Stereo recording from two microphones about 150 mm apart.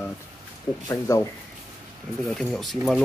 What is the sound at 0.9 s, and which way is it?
Speech, 20° left (ahead or behind).